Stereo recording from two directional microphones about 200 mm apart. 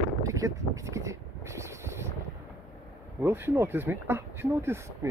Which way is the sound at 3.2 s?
10° right (ahead or behind).